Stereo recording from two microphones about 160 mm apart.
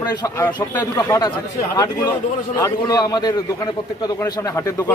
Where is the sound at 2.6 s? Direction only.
20° left (ahead or behind).